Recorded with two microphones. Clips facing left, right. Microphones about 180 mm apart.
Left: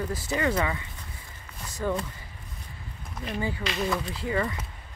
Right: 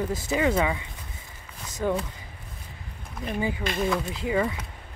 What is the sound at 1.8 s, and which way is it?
Speech, 15° right (ahead or behind).